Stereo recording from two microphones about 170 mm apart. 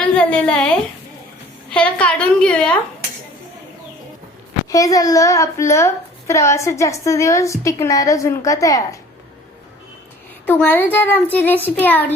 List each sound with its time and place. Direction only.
0.0 s a woman's voice: 5° left (ahead or behind)
1.7 s speech: 5° left (ahead or behind)
4.7 s a woman's voice: 20° left (ahead or behind)
10.4 s speech: 10° left (ahead or behind)